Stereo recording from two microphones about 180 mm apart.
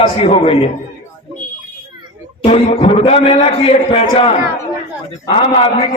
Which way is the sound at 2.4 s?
30° left (ahead or behind).